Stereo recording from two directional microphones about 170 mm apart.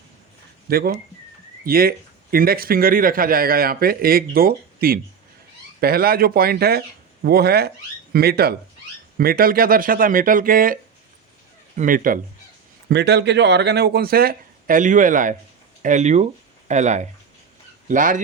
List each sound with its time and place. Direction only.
0.7 s a man's voice: 65° right (ahead or behind)
11.8 s speech: 55° right (ahead or behind)
12.9 s speech: 85° right; by 18.2 s 50° right (ahead or behind)